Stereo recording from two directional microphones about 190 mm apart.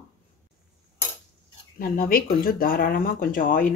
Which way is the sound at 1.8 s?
50° left (ahead or behind).